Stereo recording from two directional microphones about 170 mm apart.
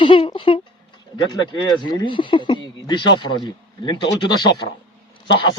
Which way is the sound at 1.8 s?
25° left (ahead or behind).